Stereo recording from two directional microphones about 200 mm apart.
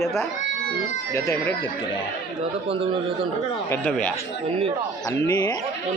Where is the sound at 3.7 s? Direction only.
5° left (ahead or behind).